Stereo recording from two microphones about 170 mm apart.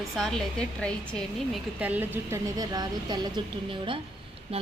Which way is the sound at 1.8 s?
10° right (ahead or behind).